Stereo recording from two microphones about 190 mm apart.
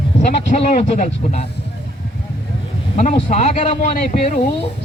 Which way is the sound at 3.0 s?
40° left (ahead or behind).